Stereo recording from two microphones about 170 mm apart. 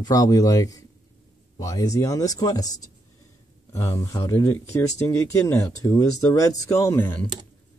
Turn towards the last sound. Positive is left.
turn(degrees=10)  # may be behind; listen again after turning